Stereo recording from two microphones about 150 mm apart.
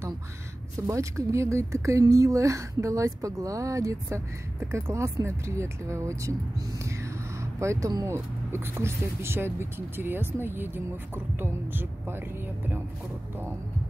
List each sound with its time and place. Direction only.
0.7 s speech: 20° right (ahead or behind)
7.5 s speech: 20° right (ahead or behind)